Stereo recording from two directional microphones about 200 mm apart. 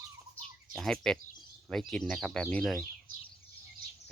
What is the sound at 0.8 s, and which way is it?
Speech, 5° left (ahead or behind).